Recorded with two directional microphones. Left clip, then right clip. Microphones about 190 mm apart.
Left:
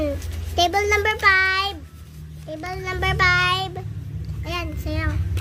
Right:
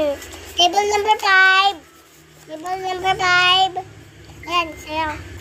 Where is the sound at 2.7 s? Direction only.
30° left (ahead or behind).